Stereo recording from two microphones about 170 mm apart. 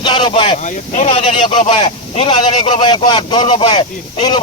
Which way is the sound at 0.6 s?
45° left (ahead or behind).